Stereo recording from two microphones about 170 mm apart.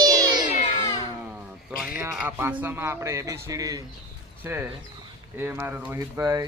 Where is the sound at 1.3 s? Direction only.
Centre (ahead or behind).